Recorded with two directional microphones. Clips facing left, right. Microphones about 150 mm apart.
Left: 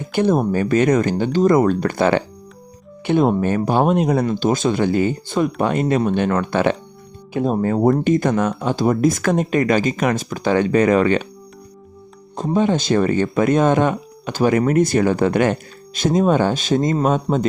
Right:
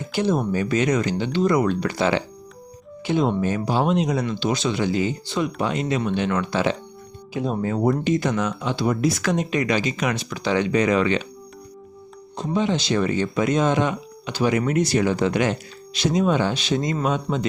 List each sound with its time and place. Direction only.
0.1 s speech: 55° left (ahead or behind)
12.4 s speech: 50° left (ahead or behind)